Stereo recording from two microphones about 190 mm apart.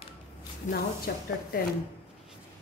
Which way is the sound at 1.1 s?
55° left (ahead or behind).